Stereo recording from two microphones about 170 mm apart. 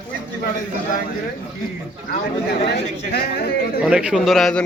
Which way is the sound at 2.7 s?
65° left (ahead or behind).